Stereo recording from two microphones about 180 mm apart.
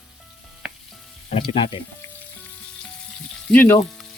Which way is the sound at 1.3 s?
30° left (ahead or behind).